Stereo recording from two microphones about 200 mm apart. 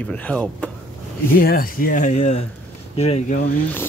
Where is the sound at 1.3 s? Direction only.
45° left (ahead or behind).